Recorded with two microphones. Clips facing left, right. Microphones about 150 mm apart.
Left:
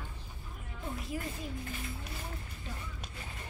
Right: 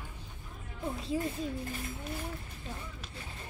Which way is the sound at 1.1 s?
25° right (ahead or behind).